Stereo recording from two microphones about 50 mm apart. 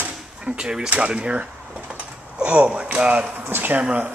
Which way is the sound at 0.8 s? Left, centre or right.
Right.